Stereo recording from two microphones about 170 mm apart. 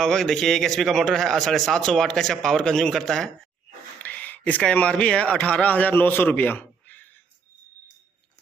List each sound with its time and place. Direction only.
0.0 s a man's voice: 5° left (ahead or behind)